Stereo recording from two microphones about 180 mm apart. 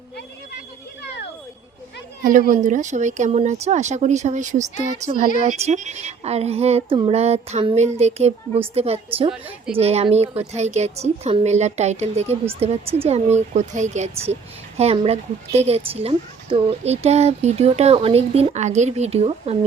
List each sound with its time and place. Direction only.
2.2 s a woman's voice: 50° right (ahead or behind)